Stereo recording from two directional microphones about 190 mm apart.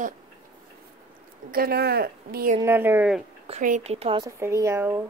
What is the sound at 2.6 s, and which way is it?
Speech, 10° right (ahead or behind).